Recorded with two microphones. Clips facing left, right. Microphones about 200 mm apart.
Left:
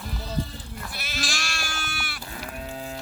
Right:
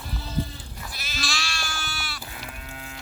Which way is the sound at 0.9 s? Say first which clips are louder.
Even; 60° left (ahead or behind).